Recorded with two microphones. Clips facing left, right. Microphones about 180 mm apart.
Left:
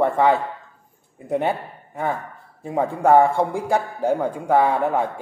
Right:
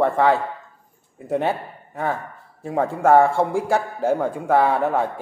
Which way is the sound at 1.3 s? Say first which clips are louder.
Even; centre (ahead or behind).